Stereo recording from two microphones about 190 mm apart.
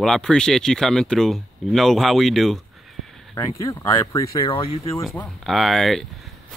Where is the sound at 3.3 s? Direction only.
15° left (ahead or behind).